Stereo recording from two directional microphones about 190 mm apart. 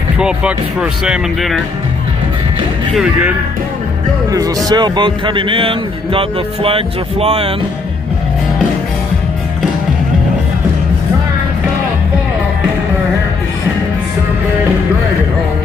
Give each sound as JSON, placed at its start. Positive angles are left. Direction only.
{"t": 0.2, "sound": "speech", "side_deg": -5}
{"t": 3.0, "sound": "speech", "side_deg": -5}
{"t": 4.3, "sound": "a man's voice", "side_deg": -20}